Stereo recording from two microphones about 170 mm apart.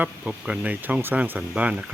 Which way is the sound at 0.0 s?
10° right (ahead or behind).